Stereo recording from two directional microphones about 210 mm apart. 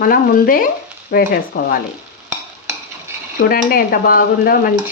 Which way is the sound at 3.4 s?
45° left (ahead or behind).